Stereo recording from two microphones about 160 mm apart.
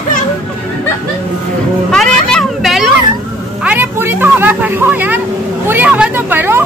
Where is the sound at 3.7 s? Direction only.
10° right (ahead or behind).